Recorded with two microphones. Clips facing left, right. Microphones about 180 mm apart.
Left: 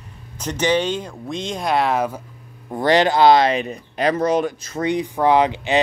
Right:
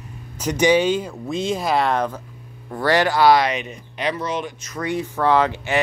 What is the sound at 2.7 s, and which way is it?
Speech, 20° left (ahead or behind).